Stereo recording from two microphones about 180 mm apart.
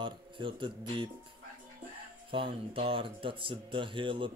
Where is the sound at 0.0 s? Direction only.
25° right (ahead or behind).